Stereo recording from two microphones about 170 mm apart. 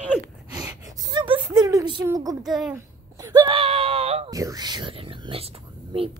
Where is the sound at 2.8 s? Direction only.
20° right (ahead or behind); by 4.2 s 35° right (ahead or behind).